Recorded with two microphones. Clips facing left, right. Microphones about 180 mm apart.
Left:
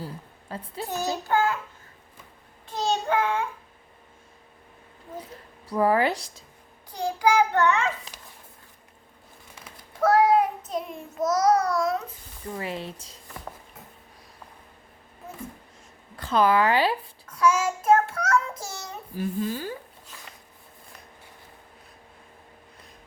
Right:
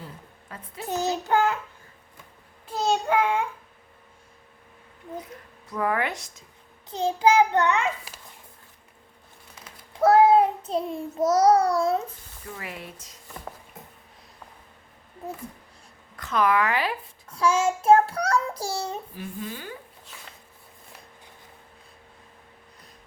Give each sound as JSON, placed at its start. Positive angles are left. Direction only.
{"t": 0.0, "sound": "a woman's voice", "side_deg": 30}
{"t": 0.9, "sound": "child singing", "side_deg": -20}
{"t": 2.6, "sound": "a sound", "side_deg": -5}
{"t": 5.2, "sound": "speech", "side_deg": 30}
{"t": 6.9, "sound": "child singing", "side_deg": -25}
{"t": 10.0, "sound": "child singing", "side_deg": -25}
{"t": 12.5, "sound": "speech", "side_deg": 30}
{"t": 16.1, "sound": "speech", "side_deg": 30}
{"t": 17.2, "sound": "child singing", "side_deg": -30}
{"t": 19.1, "sound": "speech", "side_deg": 40}